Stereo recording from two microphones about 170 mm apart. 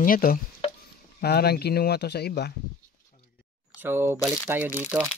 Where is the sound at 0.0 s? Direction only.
60° left (ahead or behind).